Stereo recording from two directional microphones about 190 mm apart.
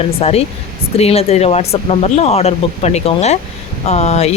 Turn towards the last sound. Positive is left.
turn(degrees=35)  # may be behind; listen again after turning